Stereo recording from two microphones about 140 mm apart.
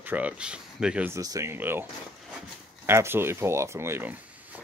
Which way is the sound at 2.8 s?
15° right (ahead or behind).